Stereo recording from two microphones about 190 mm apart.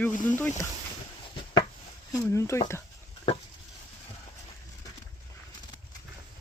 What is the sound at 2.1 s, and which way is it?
Speech, 15° left (ahead or behind).